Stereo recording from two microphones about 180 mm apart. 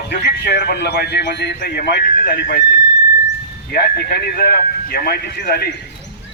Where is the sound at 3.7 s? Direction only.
55° left (ahead or behind).